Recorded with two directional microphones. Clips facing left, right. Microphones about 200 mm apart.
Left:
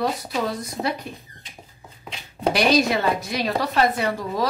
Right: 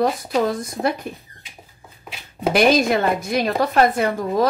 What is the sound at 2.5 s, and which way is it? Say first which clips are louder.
Speech: right 4 dB; 50° right (ahead or behind).